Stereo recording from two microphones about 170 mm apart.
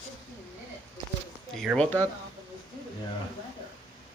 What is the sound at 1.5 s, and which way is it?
Speech, centre (ahead or behind).